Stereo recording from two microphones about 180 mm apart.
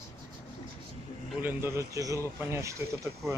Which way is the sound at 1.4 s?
15° right (ahead or behind).